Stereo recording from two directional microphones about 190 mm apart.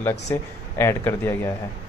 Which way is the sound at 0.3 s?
15° left (ahead or behind).